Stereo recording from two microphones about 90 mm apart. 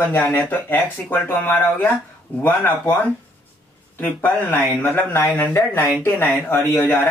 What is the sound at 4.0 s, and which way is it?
Speech, 20° left (ahead or behind).